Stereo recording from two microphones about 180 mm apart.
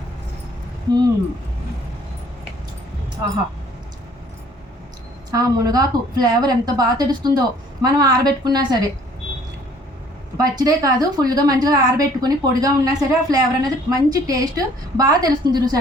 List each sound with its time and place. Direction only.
5.3 s a woman's voice: 20° right (ahead or behind)
10.3 s a woman's voice: 20° right (ahead or behind)